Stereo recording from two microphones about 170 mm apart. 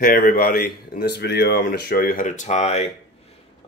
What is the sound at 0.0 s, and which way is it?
Speech, 60° left (ahead or behind).